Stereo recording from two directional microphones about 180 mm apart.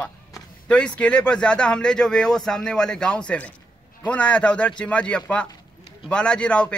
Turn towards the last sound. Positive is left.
turn(degrees=5)  # may be behind; listen again after turning